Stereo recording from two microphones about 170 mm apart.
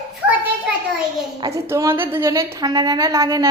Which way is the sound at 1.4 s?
20° right (ahead or behind).